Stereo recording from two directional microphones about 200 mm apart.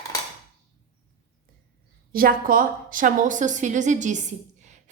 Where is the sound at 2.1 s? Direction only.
45° right (ahead or behind).